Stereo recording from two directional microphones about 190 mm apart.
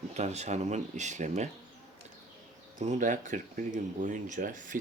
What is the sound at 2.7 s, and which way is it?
Speech, 45° right (ahead or behind).